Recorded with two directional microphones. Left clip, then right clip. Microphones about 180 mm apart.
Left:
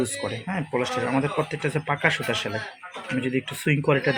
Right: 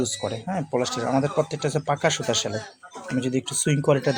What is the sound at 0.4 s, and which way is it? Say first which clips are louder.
Speech: right 1 dB; 35° right (ahead or behind).